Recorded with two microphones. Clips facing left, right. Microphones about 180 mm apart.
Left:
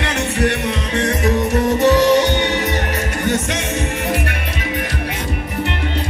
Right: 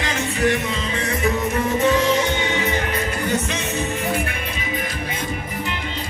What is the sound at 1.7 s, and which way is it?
Music, 75° left (ahead or behind).